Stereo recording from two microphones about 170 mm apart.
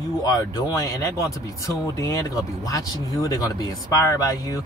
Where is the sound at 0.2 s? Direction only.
20° left (ahead or behind).